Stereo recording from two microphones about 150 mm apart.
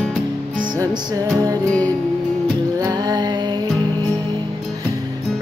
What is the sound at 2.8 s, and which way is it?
Music, 25° right (ahead or behind).